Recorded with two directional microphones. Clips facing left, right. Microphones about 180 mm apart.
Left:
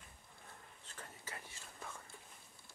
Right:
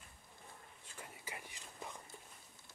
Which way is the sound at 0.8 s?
10° right (ahead or behind).